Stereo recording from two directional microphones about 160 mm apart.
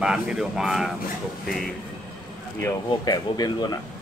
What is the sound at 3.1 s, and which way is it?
Speech, 25° left (ahead or behind).